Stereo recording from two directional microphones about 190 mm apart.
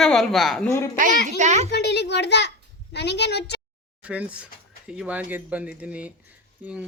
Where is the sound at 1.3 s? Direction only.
40° right (ahead or behind).